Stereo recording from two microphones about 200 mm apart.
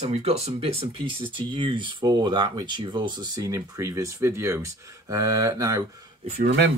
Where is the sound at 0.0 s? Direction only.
30° right (ahead or behind); by 4.6 s 15° right (ahead or behind).